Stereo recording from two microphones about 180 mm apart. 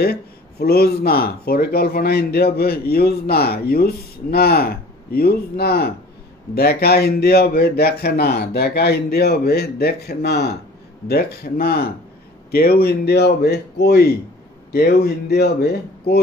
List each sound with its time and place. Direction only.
0.0 s speech: 60° left (ahead or behind)